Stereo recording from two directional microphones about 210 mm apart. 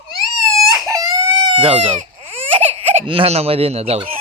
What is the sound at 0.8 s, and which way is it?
Baby cry, 15° right (ahead or behind).